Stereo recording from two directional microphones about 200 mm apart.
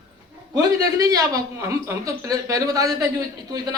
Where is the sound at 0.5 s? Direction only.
20° right (ahead or behind).